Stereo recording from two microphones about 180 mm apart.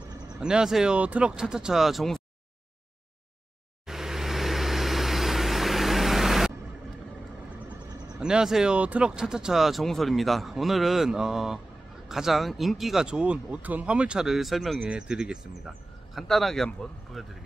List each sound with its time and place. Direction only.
0.4 s speech: 5° right (ahead or behind)
3.8 s vehicle: centre (ahead or behind)
8.2 s speech: 5° right (ahead or behind)